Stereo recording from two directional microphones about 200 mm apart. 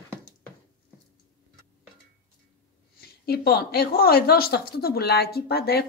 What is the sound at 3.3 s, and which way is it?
Speech, 50° left (ahead or behind).